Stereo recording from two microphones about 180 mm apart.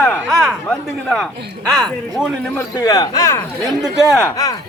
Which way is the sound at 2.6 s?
20° left (ahead or behind).